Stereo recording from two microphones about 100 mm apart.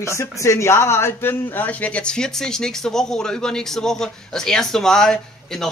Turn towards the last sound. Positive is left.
turn(degrees=5)  # may be behind; listen again after turning